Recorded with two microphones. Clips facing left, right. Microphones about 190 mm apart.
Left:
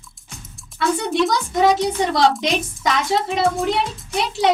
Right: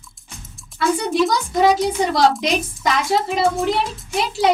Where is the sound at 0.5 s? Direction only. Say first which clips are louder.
Right 1 dB; centre (ahead or behind).